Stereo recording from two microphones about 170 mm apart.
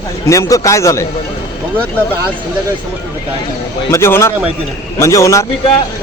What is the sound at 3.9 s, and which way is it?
A man's voice, 15° left (ahead or behind).